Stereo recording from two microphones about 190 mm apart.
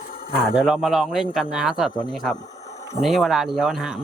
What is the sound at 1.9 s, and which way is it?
Speech, 25° left (ahead or behind).